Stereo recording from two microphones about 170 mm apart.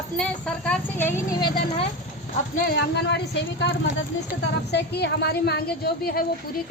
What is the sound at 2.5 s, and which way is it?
A woman's voice, 65° left (ahead or behind).